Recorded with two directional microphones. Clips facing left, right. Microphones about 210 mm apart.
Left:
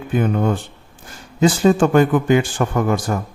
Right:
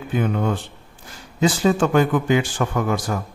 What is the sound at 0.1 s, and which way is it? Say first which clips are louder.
Speech: left 3 dB; 45° left (ahead or behind).